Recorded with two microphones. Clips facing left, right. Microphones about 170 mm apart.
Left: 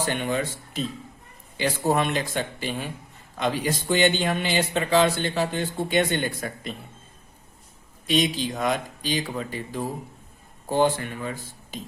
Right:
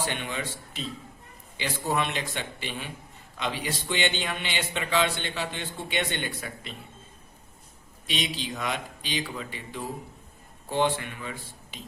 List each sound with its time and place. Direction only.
0.1 s speech: 45° left (ahead or behind)
8.0 s speech: 45° left (ahead or behind)